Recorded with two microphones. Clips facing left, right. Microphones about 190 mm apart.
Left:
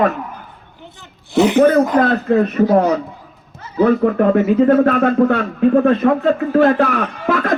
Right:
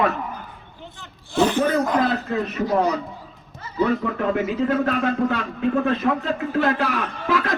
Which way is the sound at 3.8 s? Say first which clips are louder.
Left 8 dB; 50° left (ahead or behind).